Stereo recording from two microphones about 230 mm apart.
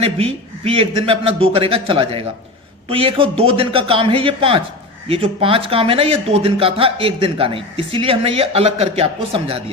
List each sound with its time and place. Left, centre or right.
0.0 s speech: right